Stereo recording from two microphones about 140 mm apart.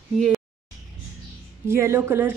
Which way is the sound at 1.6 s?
15° right (ahead or behind).